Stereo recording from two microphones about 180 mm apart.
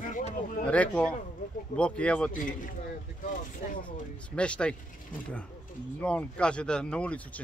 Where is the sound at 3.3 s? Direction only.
45° left (ahead or behind).